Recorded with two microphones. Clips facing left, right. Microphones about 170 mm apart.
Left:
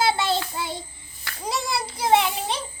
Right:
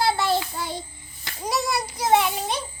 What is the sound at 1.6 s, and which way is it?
Children playing, 30° left (ahead or behind).